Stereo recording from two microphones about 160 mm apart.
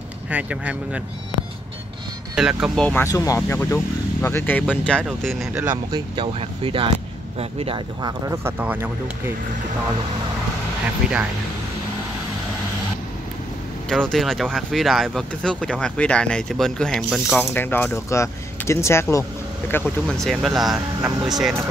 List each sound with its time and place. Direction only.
0.3 s speech: 10° right (ahead or behind)
2.3 s speech: 5° right (ahead or behind)
2.8 s speech: 10° left (ahead or behind)
5.5 s speech: 10° right (ahead or behind)
5.9 s speech: 30° right (ahead or behind); by 9.3 s 10° right (ahead or behind)
11.0 s speech: 5° right (ahead or behind)
13.8 s speech: 5° left (ahead or behind)
17.4 s speech: 15° left (ahead or behind); by 21.5 s centre (ahead or behind)